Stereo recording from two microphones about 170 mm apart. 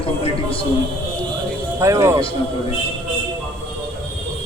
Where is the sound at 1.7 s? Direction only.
15° right (ahead or behind).